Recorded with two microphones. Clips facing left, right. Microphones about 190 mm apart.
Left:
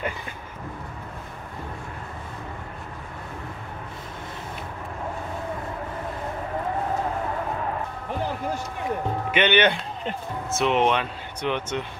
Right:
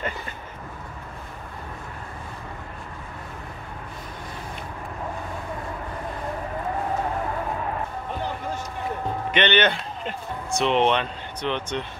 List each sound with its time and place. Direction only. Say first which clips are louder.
9.3 s speech: left 1 dB; 10° left (ahead or behind)